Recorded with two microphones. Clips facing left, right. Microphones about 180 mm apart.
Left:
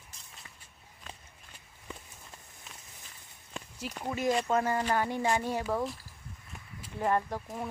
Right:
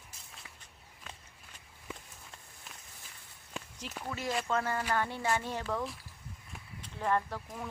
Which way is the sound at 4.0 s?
20° left (ahead or behind).